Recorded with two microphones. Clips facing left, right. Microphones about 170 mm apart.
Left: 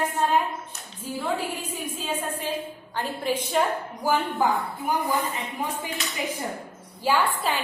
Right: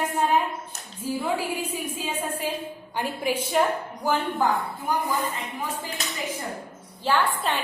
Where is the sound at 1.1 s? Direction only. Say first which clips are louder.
Right 1 dB; 10° right (ahead or behind).